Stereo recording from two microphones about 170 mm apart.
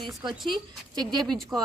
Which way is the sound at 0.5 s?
25° right (ahead or behind).